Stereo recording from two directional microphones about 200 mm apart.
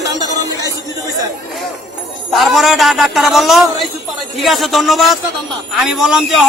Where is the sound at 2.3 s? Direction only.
Centre (ahead or behind).